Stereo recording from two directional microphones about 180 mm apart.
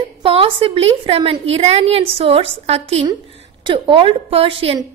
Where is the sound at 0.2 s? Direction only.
30° right (ahead or behind).